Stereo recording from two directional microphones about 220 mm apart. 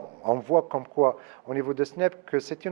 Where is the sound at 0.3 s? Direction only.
25° right (ahead or behind).